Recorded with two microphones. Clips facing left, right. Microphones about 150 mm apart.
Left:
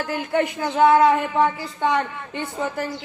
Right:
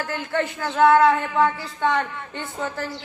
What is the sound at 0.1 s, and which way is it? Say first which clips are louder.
Speech: left 5 dB; 15° left (ahead or behind).